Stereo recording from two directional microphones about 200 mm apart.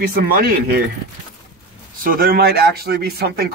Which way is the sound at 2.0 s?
45° right (ahead or behind).